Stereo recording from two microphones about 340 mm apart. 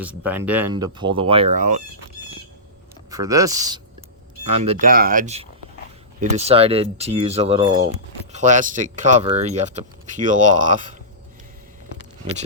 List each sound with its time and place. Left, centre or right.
0.0 s speech: centre; by 1.8 s right
3.1 s speech: centre